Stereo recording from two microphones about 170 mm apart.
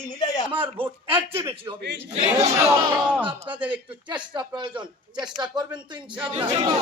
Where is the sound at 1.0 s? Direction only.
35° right (ahead or behind).